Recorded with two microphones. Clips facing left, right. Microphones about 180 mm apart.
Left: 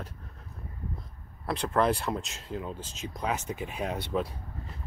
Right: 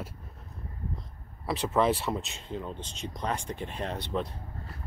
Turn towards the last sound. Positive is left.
turn(degrees=10)  # may be behind; listen again after turning